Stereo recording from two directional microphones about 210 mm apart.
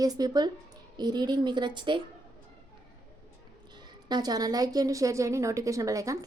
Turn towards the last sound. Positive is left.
turn(degrees=-15)  # may be behind; listen again after turning